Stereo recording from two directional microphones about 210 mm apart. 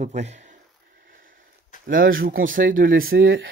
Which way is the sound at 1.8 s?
45° right (ahead or behind).